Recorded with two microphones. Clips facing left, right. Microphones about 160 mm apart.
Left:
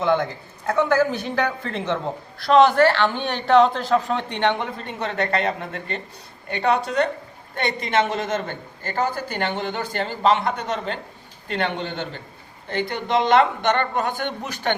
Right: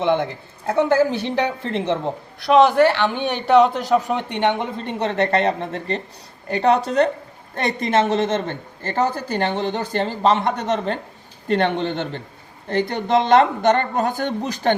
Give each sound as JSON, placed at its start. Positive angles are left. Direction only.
{"t": 0.0, "sound": "speech", "side_deg": -25}
{"t": 2.5, "sound": "speech", "side_deg": -5}
{"t": 4.8, "sound": "speech", "side_deg": -25}